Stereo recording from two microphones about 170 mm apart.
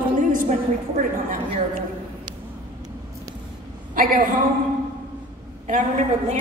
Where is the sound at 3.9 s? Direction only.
55° right (ahead or behind).